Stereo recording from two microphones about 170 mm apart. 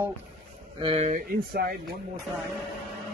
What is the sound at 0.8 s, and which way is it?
Speech, 35° right (ahead or behind).